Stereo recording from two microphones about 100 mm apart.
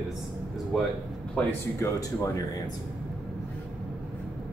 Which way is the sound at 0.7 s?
Centre (ahead or behind).